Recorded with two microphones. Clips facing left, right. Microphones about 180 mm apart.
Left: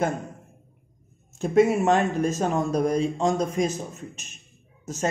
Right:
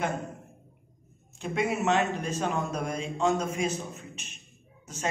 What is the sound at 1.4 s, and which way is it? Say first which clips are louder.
A man's voice: left 9 dB; 40° left (ahead or behind).